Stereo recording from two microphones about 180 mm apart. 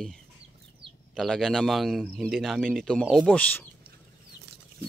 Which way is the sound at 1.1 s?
Centre (ahead or behind).